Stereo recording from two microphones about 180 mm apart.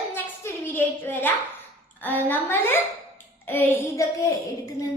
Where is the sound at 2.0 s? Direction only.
10° left (ahead or behind).